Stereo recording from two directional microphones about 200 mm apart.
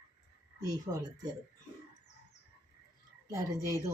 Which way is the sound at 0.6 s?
20° right (ahead or behind).